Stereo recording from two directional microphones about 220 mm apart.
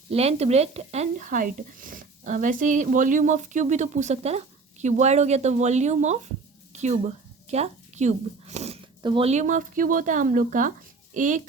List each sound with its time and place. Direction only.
0.1 s a woman's voice: 30° right (ahead or behind)